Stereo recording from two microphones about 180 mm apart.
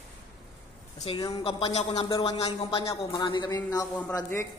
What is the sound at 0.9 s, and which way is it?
Speech, 30° left (ahead or behind).